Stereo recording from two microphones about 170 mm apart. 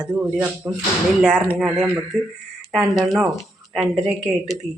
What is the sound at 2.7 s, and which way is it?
Speech, centre (ahead or behind).